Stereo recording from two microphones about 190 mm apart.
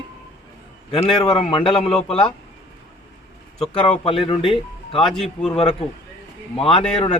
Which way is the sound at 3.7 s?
30° left (ahead or behind).